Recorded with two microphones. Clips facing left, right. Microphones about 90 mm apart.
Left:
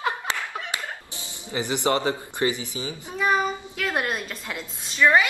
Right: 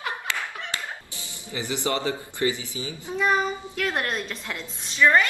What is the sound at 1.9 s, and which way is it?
Speech, 35° left (ahead or behind).